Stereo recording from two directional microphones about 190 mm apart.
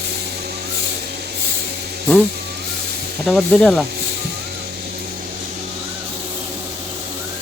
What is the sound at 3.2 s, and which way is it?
Speech, centre (ahead or behind).